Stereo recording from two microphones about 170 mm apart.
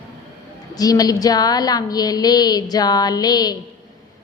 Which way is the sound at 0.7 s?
20° left (ahead or behind).